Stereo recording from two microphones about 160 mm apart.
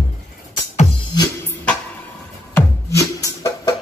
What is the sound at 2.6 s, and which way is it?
Music, 20° left (ahead or behind).